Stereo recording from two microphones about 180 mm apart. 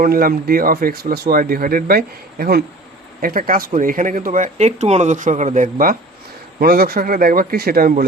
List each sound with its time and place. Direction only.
0.0 s a man's voice: 55° right (ahead or behind)
3.2 s speech: 50° right (ahead or behind)
6.6 s a man's voice: 60° right (ahead or behind)